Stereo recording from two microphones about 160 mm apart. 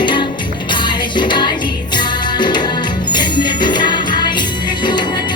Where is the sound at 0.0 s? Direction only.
30° left (ahead or behind).